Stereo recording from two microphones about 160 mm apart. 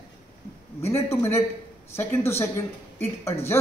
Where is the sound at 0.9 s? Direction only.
15° left (ahead or behind).